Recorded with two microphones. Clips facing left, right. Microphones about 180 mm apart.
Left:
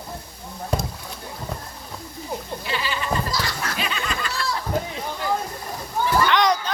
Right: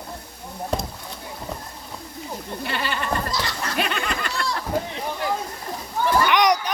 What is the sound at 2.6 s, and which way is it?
Goat, 55° right (ahead or behind).